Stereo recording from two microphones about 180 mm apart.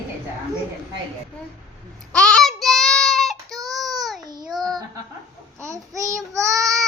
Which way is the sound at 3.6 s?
Centre (ahead or behind).